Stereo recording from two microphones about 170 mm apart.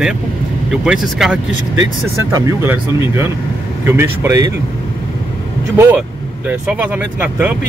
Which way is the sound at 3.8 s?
15° right (ahead or behind).